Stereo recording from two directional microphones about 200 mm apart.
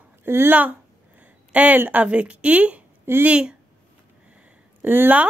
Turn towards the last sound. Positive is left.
turn(degrees=-10)  # may be behind; listen again after turning